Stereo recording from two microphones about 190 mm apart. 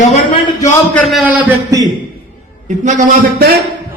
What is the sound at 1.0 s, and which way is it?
Speech, centre (ahead or behind).